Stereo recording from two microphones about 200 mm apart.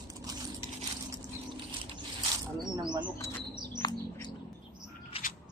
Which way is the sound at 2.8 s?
20° right (ahead or behind).